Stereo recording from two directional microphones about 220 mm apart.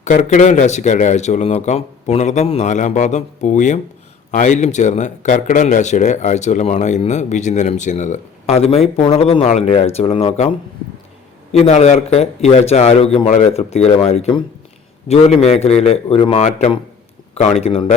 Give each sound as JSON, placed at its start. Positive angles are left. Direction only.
{"t": 0.0, "sound": "speech", "side_deg": 35}
{"t": 11.5, "sound": "a man's voice", "side_deg": 30}